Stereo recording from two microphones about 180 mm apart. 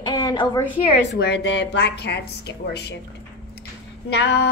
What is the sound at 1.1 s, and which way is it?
A woman's voice, 70° left (ahead or behind).